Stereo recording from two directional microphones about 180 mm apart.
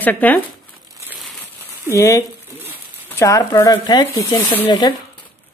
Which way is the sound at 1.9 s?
15° left (ahead or behind).